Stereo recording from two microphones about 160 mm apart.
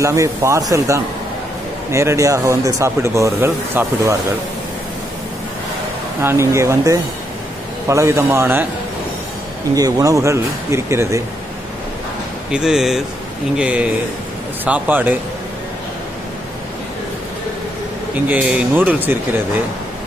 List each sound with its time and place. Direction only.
0.0 s speech: 20° right (ahead or behind)
6.2 s speech: 15° right (ahead or behind)
9.8 s speech: 20° right (ahead or behind)
12.4 s a man's voice: 5° right (ahead or behind)
18.1 s speech: 10° right (ahead or behind)